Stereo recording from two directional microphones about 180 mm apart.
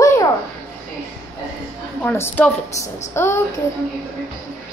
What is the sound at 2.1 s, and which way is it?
A woman's voice, 15° left (ahead or behind).